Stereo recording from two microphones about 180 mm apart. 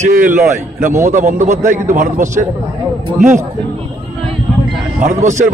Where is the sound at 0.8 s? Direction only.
45° right (ahead or behind).